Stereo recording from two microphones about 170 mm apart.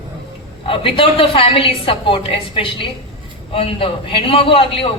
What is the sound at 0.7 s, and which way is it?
A woman's voice, 30° left (ahead or behind).